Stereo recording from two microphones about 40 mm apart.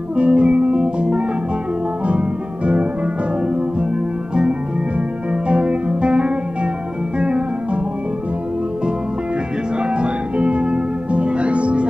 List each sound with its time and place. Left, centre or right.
0.1 s music: right
2.0 s organ: right
5.3 s music: right
9.9 s music: right